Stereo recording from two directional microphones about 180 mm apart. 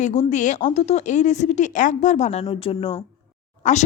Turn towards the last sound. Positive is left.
turn(degrees=40)  # may be behind; listen again after turning